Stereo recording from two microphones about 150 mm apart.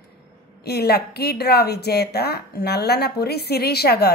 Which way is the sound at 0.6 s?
90° left.